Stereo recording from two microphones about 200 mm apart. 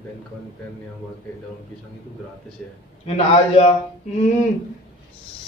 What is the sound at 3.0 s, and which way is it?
Speech, 30° left (ahead or behind).